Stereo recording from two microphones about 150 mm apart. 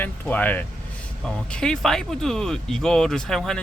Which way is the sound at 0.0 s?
10° left (ahead or behind).